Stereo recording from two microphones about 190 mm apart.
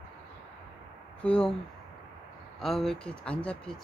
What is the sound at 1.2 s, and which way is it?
Speech, 5° left (ahead or behind).